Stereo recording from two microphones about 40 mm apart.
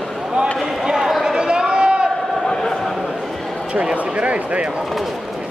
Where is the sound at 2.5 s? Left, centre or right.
Centre.